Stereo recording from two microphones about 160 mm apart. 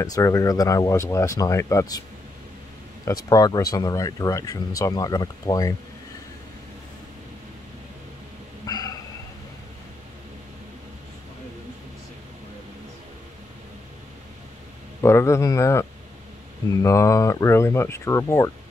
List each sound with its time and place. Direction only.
0.0 s speech: 20° left (ahead or behind)
3.1 s speech: 20° left (ahead or behind)
8.6 s bow-wow: 25° left (ahead or behind)
15.0 s speech: 15° left (ahead or behind)